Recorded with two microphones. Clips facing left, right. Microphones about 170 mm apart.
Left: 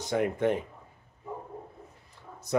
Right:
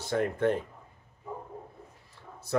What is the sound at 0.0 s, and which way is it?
Speech, 15° left (ahead or behind).